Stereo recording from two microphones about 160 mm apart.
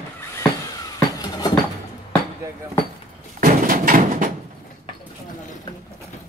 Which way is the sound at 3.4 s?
60° right (ahead or behind).